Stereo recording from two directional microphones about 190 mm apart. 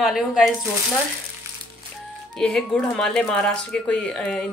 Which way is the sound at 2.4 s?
5° left (ahead or behind).